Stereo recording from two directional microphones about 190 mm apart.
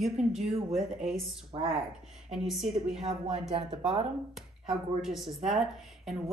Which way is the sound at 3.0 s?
30° right (ahead or behind).